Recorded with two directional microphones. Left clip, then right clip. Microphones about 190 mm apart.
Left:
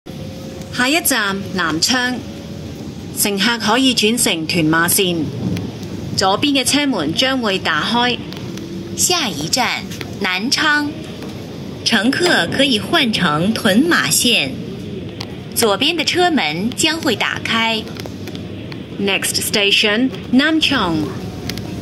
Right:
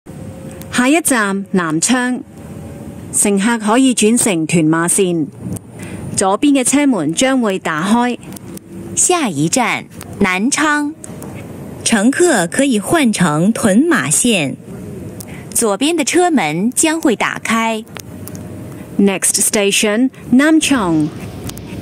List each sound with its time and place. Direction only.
0.7 s a woman's voice: 65° right (ahead or behind)
3.2 s speech: 65° right (ahead or behind)
6.1 s speech: 65° right (ahead or behind)
7.3 s speech: 55° right (ahead or behind)
11.9 s speech: 70° right (ahead or behind)
15.6 s speech: 75° right (ahead or behind)
17.0 s speech: 50° right (ahead or behind)
17.4 s speech: 70° right (ahead or behind)
19.0 s speech: 70° right (ahead or behind)